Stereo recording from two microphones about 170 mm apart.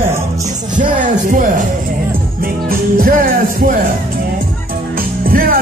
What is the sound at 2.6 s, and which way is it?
Speech, 60° right (ahead or behind).